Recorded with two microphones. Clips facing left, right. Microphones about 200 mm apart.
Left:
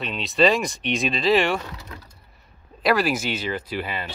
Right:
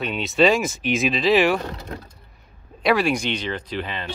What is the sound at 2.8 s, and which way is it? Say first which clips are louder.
Speech: right 1 dB; centre (ahead or behind).